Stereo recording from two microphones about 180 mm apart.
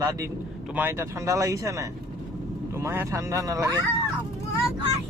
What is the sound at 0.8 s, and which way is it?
Speech, 15° right (ahead or behind).